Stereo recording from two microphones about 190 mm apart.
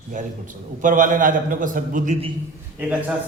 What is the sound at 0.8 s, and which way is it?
A man's voice, 45° right (ahead or behind).